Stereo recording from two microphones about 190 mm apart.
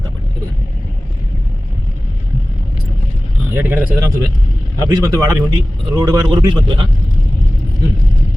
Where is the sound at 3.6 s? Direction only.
10° right (ahead or behind); by 6.9 s 25° right (ahead or behind).